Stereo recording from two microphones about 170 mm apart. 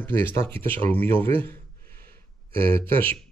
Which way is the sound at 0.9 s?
10° left (ahead or behind).